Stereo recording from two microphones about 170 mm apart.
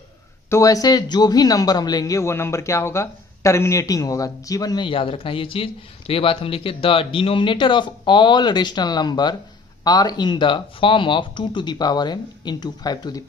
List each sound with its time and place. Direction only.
0.5 s a man's voice: 20° left (ahead or behind)